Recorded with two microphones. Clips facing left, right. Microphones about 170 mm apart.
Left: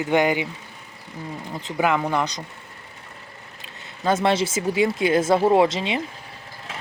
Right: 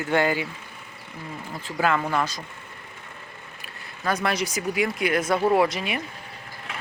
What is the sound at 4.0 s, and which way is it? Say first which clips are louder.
Speech: left 5 dB; 25° left (ahead or behind).